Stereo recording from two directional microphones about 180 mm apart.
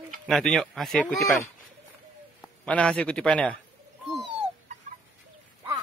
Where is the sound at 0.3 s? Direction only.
Centre (ahead or behind).